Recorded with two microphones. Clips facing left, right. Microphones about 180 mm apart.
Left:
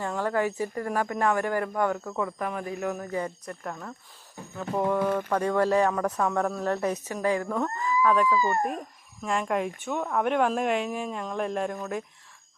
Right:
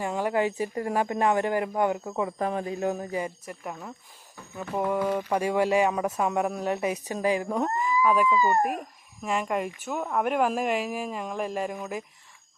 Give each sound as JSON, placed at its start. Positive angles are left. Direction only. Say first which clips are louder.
{"t": 0.0, "sound": "speech", "louder": "right 1 dB", "side_deg": -15}
{"t": 9.2, "sound": "a woman's voice", "louder": "left 1 dB", "side_deg": -5}